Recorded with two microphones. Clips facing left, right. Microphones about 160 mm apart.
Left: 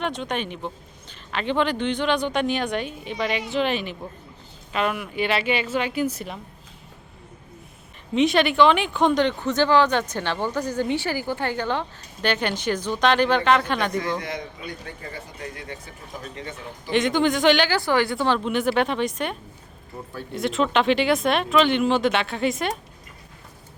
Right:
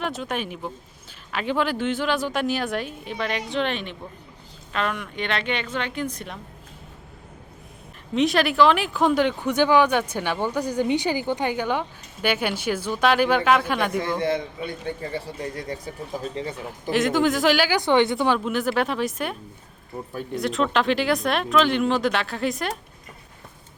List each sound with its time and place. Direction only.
0.0 s speech: 5° right (ahead or behind)
8.1 s speech: centre (ahead or behind)
14.2 s speech: 30° right (ahead or behind)
16.9 s speech: centre (ahead or behind)
17.7 s speech: 20° right (ahead or behind)
18.3 s speech: centre (ahead or behind)